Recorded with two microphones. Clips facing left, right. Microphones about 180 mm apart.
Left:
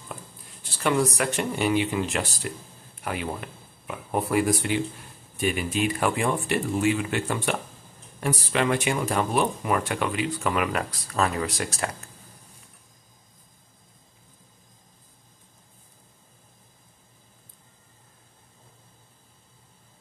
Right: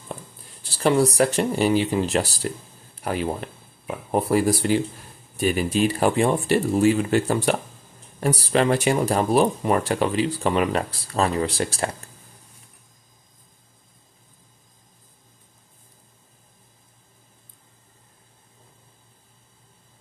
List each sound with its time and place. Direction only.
0.1 s speech: 35° right (ahead or behind)